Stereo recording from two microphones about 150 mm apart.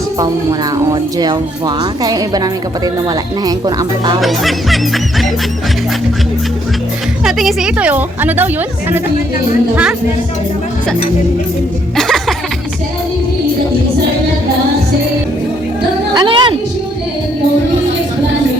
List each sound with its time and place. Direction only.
0.9 s a woman's voice: 25° right (ahead or behind)
4.2 s music: centre (ahead or behind)
7.3 s a woman's voice: centre (ahead or behind)
11.9 s music: centre (ahead or behind)
16.1 s a sound: 30° right (ahead or behind)